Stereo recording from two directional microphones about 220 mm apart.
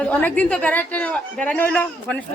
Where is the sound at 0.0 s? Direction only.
5° left (ahead or behind).